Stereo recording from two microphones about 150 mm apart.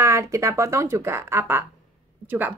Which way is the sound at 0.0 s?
20° right (ahead or behind).